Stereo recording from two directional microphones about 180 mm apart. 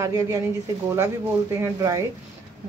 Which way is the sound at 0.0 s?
20° right (ahead or behind).